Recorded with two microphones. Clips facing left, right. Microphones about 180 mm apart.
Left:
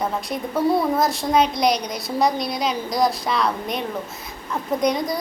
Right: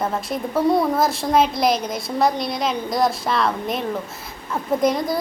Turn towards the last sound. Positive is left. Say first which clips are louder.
# right 2 dB
turn(degrees=0)  # may be behind; listen again after turning